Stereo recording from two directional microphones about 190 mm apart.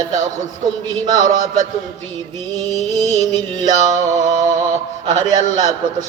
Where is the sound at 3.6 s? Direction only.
20° right (ahead or behind).